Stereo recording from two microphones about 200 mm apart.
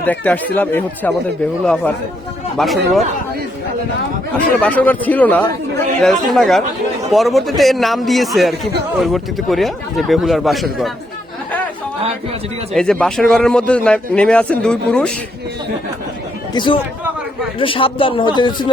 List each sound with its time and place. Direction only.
0.0 s a man's voice: 10° left (ahead or behind)
4.6 s a man's voice: 10° left (ahead or behind)
12.7 s a man's voice: 5° left (ahead or behind)
16.6 s speech: 25° left (ahead or behind)